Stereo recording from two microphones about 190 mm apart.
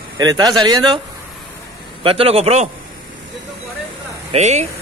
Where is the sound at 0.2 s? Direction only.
20° right (ahead or behind).